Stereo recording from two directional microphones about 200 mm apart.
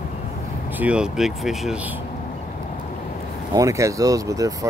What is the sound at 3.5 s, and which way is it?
Speech, 15° right (ahead or behind).